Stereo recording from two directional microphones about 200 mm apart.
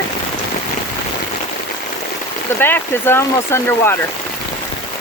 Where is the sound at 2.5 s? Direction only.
10° left (ahead or behind).